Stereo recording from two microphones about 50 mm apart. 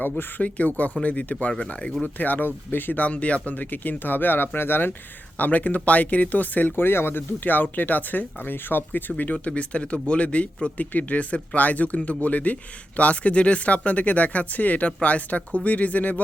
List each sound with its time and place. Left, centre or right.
0.0 s speech: left
2.1 s speech: left
3.0 s speech: left
5.4 s speech: left